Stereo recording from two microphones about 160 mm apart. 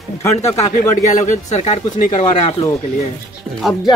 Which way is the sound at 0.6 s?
45° left (ahead or behind).